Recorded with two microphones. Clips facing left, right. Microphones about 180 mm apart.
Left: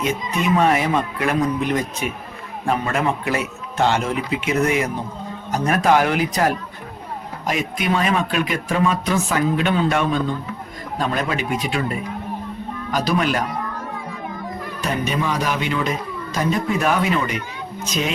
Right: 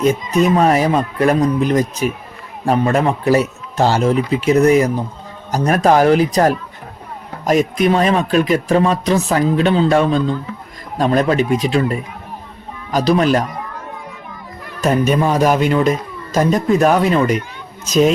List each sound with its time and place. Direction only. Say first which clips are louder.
0.0 s speech: right 8 dB; 40° right (ahead or behind)
14.8 s speech: right 9 dB; 45° right (ahead or behind)